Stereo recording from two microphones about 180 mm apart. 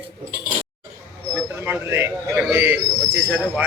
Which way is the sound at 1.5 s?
10° right (ahead or behind).